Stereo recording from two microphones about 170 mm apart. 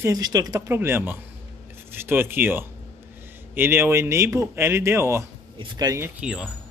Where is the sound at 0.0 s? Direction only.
20° right (ahead or behind); by 6.5 s 5° right (ahead or behind).